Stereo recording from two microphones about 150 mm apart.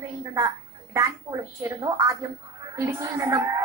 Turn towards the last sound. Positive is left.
turn(degrees=-20)  # may be behind; listen again after turning